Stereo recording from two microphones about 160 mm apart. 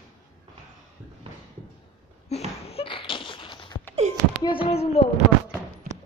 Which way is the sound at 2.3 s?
40° left (ahead or behind).